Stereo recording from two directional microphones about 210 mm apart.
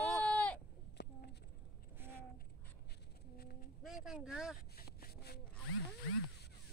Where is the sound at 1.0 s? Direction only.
50° left (ahead or behind).